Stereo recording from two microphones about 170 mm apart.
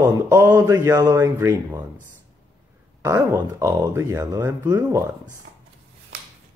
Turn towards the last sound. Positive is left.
turn(degrees=-15)  # may be behind; listen again after turning